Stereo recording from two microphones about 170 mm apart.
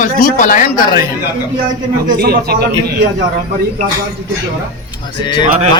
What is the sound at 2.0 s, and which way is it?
Speech, 65° right (ahead or behind).